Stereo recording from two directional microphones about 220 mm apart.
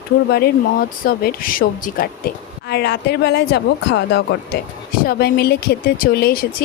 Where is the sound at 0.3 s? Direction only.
45° left (ahead or behind).